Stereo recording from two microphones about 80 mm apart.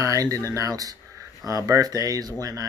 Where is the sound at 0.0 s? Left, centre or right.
Right.